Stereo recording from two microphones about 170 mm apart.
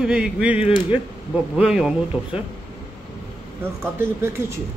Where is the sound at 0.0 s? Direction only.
5° right (ahead or behind).